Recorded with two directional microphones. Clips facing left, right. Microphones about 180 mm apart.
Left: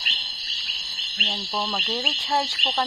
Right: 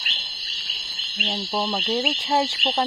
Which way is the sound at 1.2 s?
20° right (ahead or behind).